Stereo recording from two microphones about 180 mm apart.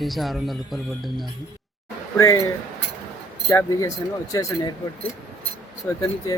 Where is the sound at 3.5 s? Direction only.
20° left (ahead or behind).